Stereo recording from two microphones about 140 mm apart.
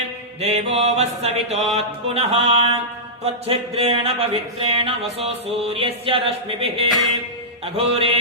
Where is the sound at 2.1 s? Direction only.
45° right (ahead or behind).